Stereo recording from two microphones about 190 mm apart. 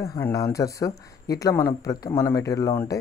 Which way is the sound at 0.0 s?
15° left (ahead or behind).